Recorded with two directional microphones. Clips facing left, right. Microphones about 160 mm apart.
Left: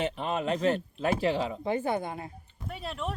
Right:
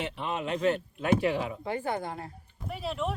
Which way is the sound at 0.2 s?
40° left (ahead or behind).